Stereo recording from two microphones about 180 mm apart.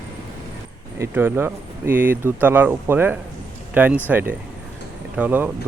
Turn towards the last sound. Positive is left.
turn(degrees=-10)  # may be behind; listen again after turning